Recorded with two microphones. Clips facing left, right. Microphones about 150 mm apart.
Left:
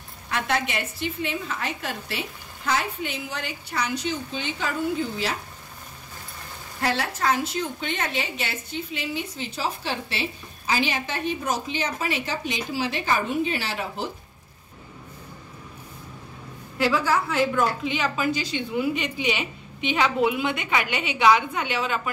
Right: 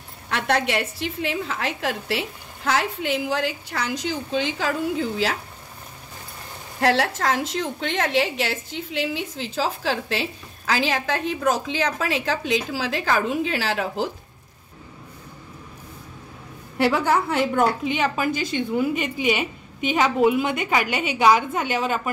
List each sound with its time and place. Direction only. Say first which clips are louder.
0.3 s a woman's voice: right 4 dB; 75° right (ahead or behind)
6.8 s a woman's voice: right 5 dB; 80° right
16.8 s a woman's voice: right 3 dB; 60° right (ahead or behind)